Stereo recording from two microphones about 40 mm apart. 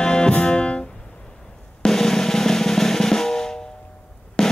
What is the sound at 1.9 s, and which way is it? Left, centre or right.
Drum, centre.